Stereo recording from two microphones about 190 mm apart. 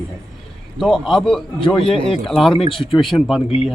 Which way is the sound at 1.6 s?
25° left (ahead or behind).